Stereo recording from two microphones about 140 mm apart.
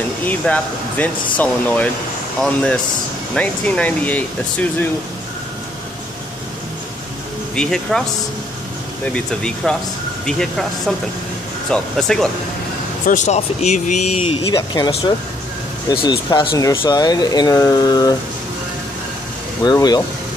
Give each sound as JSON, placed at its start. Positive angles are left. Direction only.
{"t": 0.3, "sound": "speech", "side_deg": 10}
{"t": 7.5, "sound": "speech", "side_deg": 5}
{"t": 9.1, "sound": "speech", "side_deg": 5}
{"t": 11.7, "sound": "speech", "side_deg": 5}
{"t": 13.0, "sound": "speech", "side_deg": 65}
{"t": 14.5, "sound": "speech", "side_deg": 25}
{"t": 15.9, "sound": "speech", "side_deg": 30}
{"t": 19.6, "sound": "speech", "side_deg": 30}